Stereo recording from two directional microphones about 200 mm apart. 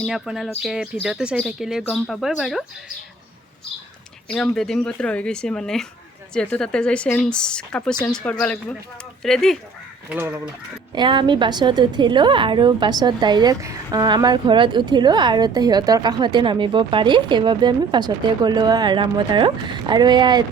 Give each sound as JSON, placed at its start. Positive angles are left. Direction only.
{"t": 0.0, "sound": "speech", "side_deg": 0}
{"t": 4.3, "sound": "speech", "side_deg": 0}
{"t": 10.1, "sound": "speech", "side_deg": -10}
{"t": 10.9, "sound": "a woman's voice", "side_deg": -25}